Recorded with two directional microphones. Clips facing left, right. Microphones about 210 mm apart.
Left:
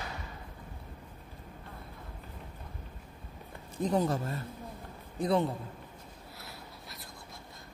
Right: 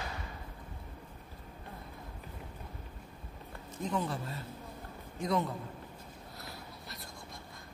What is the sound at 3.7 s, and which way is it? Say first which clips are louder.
A man's voice: left 6 dB; 35° left (ahead or behind).